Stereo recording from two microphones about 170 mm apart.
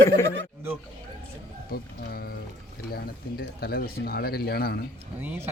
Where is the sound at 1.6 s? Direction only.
65° left (ahead or behind).